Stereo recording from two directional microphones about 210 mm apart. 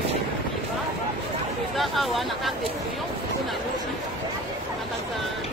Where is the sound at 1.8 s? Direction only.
Centre (ahead or behind).